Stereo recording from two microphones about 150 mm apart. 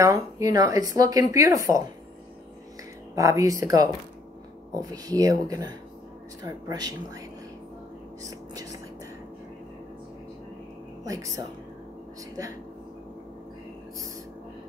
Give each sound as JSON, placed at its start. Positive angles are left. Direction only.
{"t": 0.0, "sound": "speech", "side_deg": -25}
{"t": 3.2, "sound": "speech", "side_deg": -20}
{"t": 8.2, "sound": "whispering", "side_deg": -20}
{"t": 11.1, "sound": "speech", "side_deg": -20}